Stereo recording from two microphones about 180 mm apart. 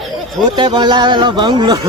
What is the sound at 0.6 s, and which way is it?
Speech, 25° right (ahead or behind).